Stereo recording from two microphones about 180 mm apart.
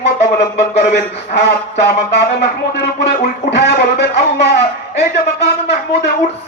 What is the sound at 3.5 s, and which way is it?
Speech, 70° left (ahead or behind).